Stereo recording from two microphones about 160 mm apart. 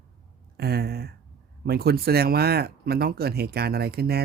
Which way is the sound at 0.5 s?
80° right.